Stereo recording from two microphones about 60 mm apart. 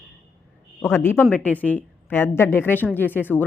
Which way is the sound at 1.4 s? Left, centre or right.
Left.